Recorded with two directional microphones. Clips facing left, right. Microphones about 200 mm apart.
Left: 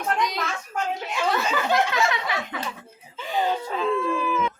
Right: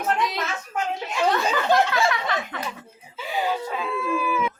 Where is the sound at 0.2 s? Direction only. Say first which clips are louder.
Even; centre (ahead or behind).